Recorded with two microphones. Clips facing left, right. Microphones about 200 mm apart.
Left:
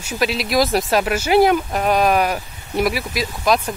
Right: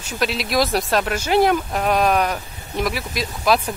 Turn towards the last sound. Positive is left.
turn(degrees=0)  # may be behind; listen again after turning